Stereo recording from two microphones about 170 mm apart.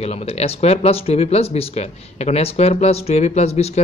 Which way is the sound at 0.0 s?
35° left (ahead or behind).